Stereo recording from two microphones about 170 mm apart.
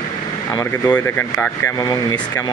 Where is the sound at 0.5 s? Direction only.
20° left (ahead or behind).